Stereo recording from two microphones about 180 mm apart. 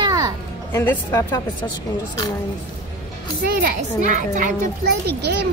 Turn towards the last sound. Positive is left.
turn(degrees=-65)  # may be behind; listen again after turning